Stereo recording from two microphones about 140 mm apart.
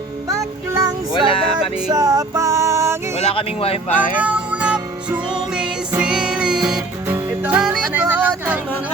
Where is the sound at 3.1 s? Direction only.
45° left (ahead or behind).